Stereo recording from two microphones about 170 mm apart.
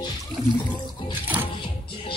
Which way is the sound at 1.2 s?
10° right (ahead or behind).